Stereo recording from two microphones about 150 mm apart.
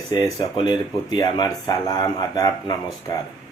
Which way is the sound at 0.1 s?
30° left (ahead or behind).